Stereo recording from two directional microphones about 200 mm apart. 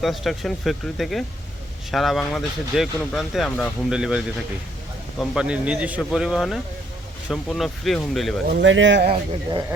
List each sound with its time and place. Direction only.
0.0 s speech: centre (ahead or behind)
5.2 s speech: 5° right (ahead or behind)
8.4 s speech: 65° right (ahead or behind)